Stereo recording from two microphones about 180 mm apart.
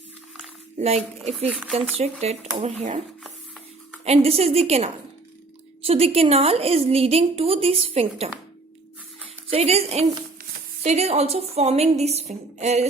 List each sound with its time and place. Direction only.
0.8 s a woman's voice: 35° right (ahead or behind)
1.5 s speech: 5° right (ahead or behind)
2.2 s a woman's voice: 35° right (ahead or behind)
4.0 s a woman's voice: 35° right (ahead or behind)
9.5 s a woman's voice: 35° right (ahead or behind)